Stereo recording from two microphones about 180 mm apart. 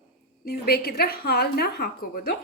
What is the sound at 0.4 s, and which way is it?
A woman's voice, 60° left (ahead or behind).